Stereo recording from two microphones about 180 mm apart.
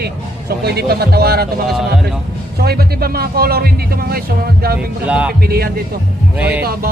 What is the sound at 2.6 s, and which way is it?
Speech, 60° right (ahead or behind).